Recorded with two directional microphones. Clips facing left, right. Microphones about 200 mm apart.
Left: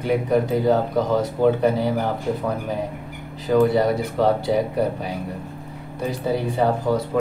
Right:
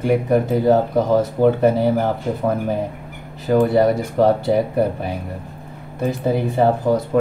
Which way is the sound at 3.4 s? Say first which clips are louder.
Right 2 dB; 50° right (ahead or behind).